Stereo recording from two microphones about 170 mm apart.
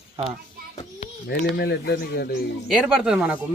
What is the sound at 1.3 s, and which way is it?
Speech, 75° left (ahead or behind).